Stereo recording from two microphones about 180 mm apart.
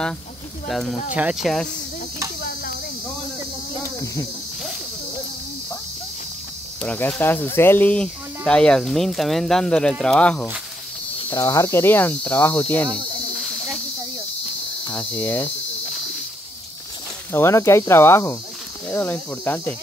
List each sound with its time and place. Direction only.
0.7 s speech: centre (ahead or behind)
2.4 s cricket: 55° left (ahead or behind)
4.0 s speech: 15° left (ahead or behind)
6.8 s speech: 5° left (ahead or behind)
11.3 s speech: 20° left (ahead or behind)
15.0 s speech: 10° left (ahead or behind)
17.3 s speech: 15° left (ahead or behind)